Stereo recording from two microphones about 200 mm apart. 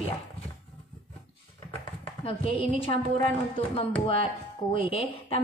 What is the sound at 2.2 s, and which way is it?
Speech, 30° left (ahead or behind).